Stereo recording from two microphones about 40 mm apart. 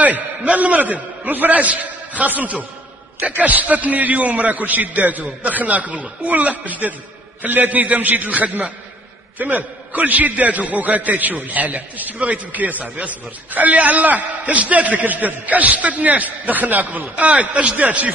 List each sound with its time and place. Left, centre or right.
0.4 s a man's voice: right